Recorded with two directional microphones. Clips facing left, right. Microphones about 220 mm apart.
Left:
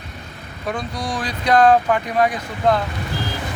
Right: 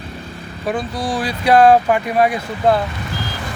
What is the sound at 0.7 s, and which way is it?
Speech, 5° right (ahead or behind).